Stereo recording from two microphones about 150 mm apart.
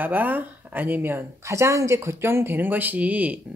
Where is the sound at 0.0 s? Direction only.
10° right (ahead or behind).